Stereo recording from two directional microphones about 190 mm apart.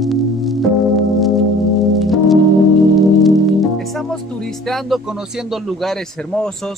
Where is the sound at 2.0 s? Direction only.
Centre (ahead or behind).